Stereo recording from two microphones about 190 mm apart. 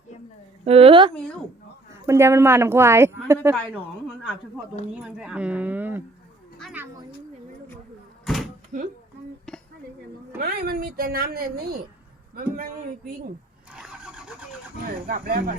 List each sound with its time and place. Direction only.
0.6 s a woman's voice: 30° right (ahead or behind)
1.9 s speech: 15° right (ahead or behind)
4.2 s speech: 5° right (ahead or behind)
8.2 s a sound: centre (ahead or behind)
9.5 s a sound: 5° left (ahead or behind)
10.4 s a woman's voice: 50° right (ahead or behind)
13.7 s vehicle: 5° right (ahead or behind)
15.0 s a woman's voice: 50° right (ahead or behind)